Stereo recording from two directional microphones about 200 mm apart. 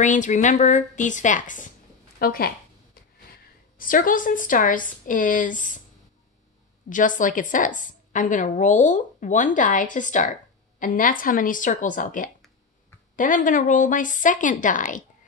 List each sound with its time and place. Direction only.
0.0 s a woman's voice: 40° left (ahead or behind)
2.1 s a sound: 50° left (ahead or behind)
3.7 s speech: 45° left (ahead or behind)
6.9 s a woman's voice: 40° left (ahead or behind)